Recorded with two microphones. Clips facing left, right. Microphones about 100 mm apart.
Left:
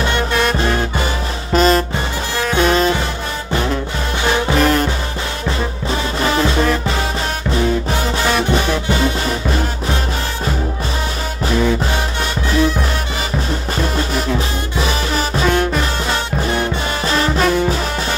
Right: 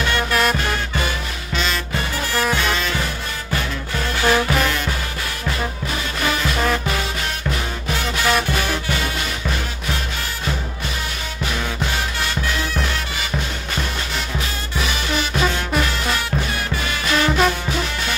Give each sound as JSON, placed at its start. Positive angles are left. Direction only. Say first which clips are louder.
{"t": 0.0, "sound": "music", "louder": "left 3 dB", "side_deg": 25}
{"t": 1.5, "sound": "music", "louder": "left 11 dB", "side_deg": 40}
{"t": 2.0, "sound": "music", "louder": "left 1 dB", "side_deg": 20}
{"t": 4.2, "sound": "music", "louder": "left 1 dB", "side_deg": 20}
{"t": 4.6, "sound": "music", "louder": "left 7 dB", "side_deg": 40}
{"t": 6.2, "sound": "music", "louder": "left 5 dB", "side_deg": 30}
{"t": 14.8, "sound": "music", "louder": "left 4 dB", "side_deg": 35}
{"t": 17.0, "sound": "music", "louder": "left 1 dB", "side_deg": 35}